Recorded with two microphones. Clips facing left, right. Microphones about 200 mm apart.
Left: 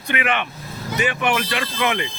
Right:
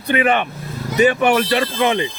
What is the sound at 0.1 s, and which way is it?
A man's voice, 35° right (ahead or behind).